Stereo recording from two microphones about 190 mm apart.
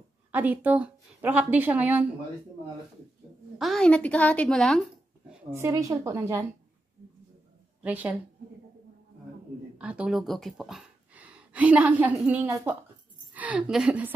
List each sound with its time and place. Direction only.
0.3 s a woman's voice: 10° right (ahead or behind)
3.5 s a woman's voice: centre (ahead or behind)
5.5 s a woman's voice: 15° right (ahead or behind)
7.8 s a woman's voice: 5° right (ahead or behind)
9.8 s a woman's voice: 5° right (ahead or behind)